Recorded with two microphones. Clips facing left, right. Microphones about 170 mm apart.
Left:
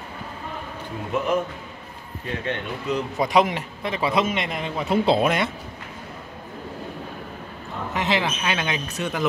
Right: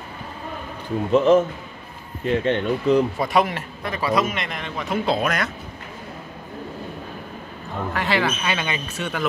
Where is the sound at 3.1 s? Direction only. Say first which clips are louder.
Left 1 dB; 20° left (ahead or behind).